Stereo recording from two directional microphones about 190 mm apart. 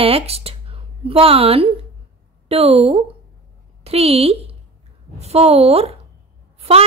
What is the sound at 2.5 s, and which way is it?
A woman's voice, 30° right (ahead or behind).